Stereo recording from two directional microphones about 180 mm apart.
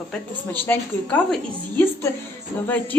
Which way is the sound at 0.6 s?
10° left (ahead or behind).